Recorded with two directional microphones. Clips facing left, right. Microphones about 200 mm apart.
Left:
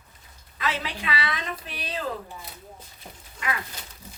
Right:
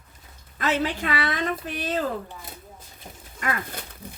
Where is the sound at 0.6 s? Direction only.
50° right (ahead or behind).